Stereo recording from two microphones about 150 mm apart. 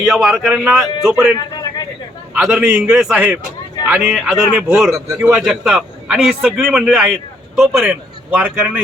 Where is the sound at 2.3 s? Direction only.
5° right (ahead or behind).